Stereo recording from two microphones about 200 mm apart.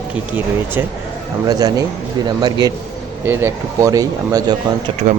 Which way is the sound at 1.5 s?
20° right (ahead or behind).